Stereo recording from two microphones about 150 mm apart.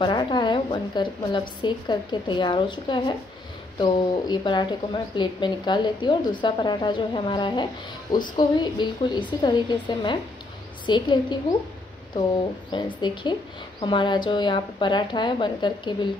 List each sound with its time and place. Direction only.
0.0 s a woman's voice: 30° left (ahead or behind)
12.7 s a woman's voice: 30° left (ahead or behind)